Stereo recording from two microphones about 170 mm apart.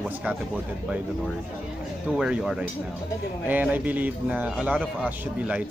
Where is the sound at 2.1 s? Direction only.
5° right (ahead or behind).